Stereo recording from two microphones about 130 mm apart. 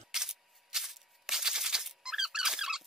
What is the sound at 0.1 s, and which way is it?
Music, 5° right (ahead or behind).